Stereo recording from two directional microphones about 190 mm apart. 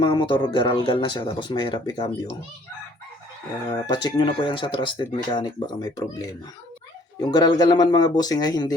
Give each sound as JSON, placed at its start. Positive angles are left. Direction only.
{"t": 0.0, "sound": "speech", "side_deg": 25}
{"t": 3.7, "sound": "speech", "side_deg": 20}